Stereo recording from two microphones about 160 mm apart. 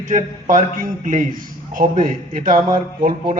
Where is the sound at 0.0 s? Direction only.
55° right (ahead or behind).